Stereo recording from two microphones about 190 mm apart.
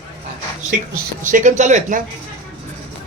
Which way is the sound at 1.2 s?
40° right (ahead or behind).